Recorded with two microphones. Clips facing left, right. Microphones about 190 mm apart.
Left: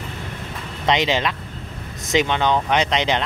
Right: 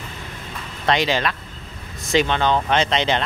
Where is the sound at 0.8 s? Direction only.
20° left (ahead or behind).